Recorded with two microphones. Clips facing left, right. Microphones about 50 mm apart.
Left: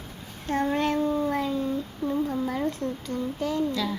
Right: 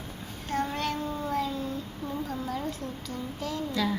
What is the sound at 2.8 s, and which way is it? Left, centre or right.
Speech, left.